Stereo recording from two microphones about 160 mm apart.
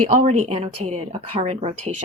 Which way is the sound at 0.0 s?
45° right (ahead or behind).